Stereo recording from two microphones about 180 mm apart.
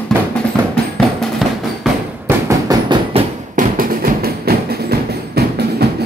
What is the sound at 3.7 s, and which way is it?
Music, 55° right (ahead or behind).